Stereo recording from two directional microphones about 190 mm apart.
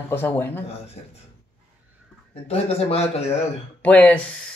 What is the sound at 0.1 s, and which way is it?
Speech, 10° left (ahead or behind).